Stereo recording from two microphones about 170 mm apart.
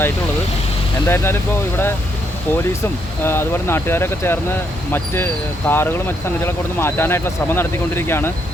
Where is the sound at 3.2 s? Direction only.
15° left (ahead or behind).